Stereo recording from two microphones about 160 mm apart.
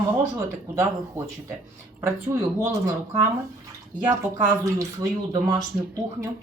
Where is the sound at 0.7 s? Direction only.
20° right (ahead or behind).